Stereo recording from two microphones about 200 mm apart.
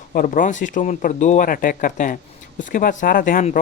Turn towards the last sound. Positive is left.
turn(degrees=40)  # may be behind; listen again after turning